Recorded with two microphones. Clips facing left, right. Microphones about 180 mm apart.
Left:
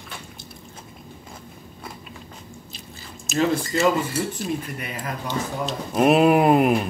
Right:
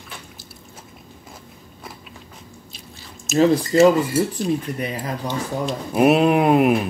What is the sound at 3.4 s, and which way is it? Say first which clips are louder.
Speech: right 7 dB; 35° right (ahead or behind).